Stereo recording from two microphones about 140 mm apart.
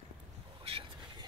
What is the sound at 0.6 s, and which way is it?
Boat, 40° right (ahead or behind).